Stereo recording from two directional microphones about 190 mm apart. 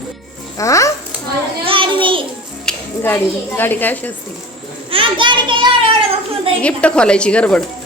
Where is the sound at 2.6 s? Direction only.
5° left (ahead or behind).